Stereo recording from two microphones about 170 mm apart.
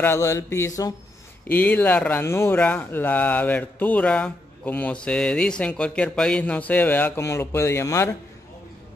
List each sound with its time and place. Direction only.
0.0 s speech: 15° left (ahead or behind)